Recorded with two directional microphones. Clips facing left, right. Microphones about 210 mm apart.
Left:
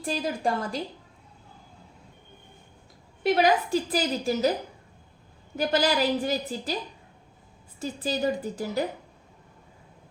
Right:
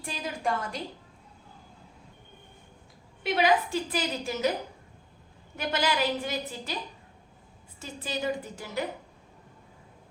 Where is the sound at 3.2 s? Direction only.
40° left (ahead or behind).